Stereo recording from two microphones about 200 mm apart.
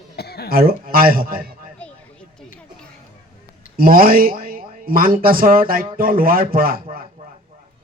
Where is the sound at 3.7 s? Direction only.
45° right (ahead or behind).